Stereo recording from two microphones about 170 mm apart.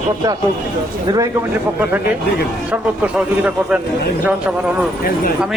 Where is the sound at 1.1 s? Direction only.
20° right (ahead or behind).